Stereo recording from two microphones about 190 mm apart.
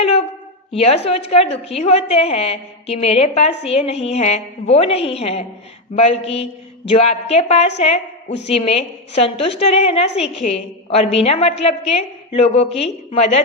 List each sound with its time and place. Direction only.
0.7 s a woman's voice: 30° left (ahead or behind)